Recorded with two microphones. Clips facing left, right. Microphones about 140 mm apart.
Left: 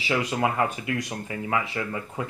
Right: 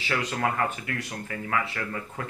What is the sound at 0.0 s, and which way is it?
Speech, 10° left (ahead or behind).